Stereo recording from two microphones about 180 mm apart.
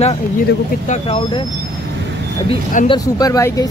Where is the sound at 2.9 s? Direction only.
20° left (ahead or behind).